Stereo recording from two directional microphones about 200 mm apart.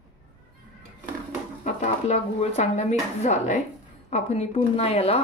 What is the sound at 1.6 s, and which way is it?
Speech, 35° left (ahead or behind).